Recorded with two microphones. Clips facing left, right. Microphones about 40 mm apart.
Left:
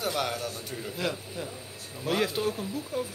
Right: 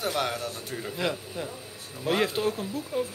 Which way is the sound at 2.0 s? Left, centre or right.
Centre.